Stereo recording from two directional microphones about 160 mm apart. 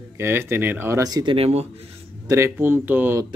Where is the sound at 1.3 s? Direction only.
40° right (ahead or behind).